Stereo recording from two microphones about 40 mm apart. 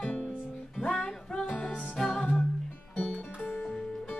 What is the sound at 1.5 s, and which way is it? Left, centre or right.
Music, left.